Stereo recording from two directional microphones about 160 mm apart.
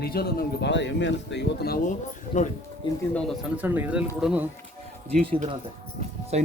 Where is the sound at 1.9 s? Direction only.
50° left (ahead or behind).